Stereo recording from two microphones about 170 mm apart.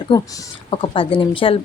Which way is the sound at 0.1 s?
25° left (ahead or behind).